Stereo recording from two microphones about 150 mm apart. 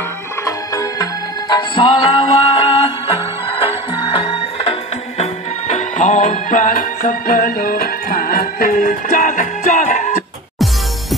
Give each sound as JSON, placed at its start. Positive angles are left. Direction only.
{"t": 0.5, "sound": "music", "side_deg": 20}
{"t": 1.5, "sound": "music", "side_deg": 35}